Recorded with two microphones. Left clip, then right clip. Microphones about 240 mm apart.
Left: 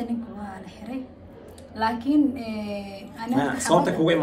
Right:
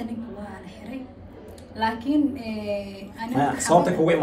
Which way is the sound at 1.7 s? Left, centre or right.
Centre.